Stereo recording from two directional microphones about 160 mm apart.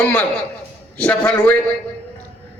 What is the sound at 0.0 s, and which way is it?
A man's voice, 10° left (ahead or behind).